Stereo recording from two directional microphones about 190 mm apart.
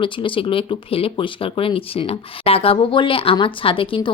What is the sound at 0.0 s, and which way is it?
Speech, 25° left (ahead or behind).